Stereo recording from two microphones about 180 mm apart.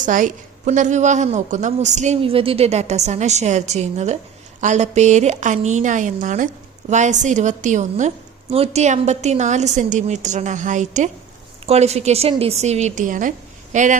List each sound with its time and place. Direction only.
0.0 s a woman's voice: 45° right (ahead or behind)